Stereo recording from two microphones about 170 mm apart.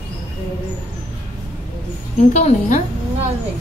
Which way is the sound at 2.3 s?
45° left (ahead or behind).